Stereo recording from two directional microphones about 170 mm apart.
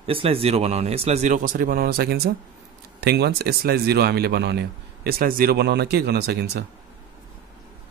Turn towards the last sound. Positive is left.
turn(degrees=-70)  # may be behind; listen again after turning